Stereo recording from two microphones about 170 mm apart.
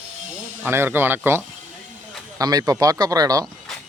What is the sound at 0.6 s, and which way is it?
Speech, 15° right (ahead or behind).